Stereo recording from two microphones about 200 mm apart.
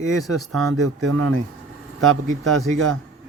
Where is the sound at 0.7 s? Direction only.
90° right.